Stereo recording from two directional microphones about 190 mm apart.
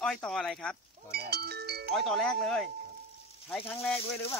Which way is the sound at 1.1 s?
60° right (ahead or behind).